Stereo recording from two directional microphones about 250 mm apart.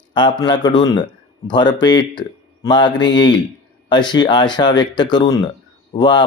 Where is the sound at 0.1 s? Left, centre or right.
Centre.